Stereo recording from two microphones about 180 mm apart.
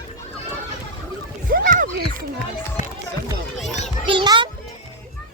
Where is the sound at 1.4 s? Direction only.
50° right (ahead or behind).